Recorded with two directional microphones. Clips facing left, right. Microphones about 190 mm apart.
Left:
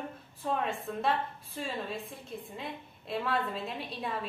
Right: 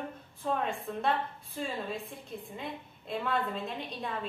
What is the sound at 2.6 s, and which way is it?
A woman's voice, 5° left (ahead or behind).